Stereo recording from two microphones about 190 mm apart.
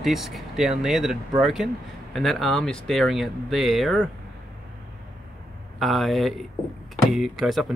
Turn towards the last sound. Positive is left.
turn(degrees=0)  # may be behind; listen again after turning